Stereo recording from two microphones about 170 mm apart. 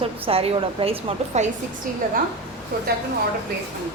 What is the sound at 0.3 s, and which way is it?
A woman's voice, 35° right (ahead or behind).